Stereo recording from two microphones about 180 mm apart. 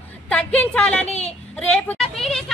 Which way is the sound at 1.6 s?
5° left (ahead or behind).